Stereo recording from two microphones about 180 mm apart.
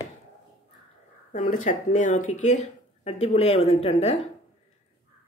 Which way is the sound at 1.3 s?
45° left (ahead or behind).